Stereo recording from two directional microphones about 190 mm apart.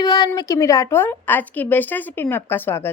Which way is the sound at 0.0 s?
20° left (ahead or behind).